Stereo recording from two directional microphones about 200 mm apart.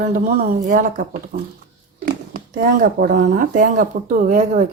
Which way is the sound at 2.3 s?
45° right (ahead or behind).